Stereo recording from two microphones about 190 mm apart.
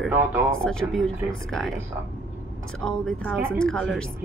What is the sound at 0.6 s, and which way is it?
Speech, 5° left (ahead or behind).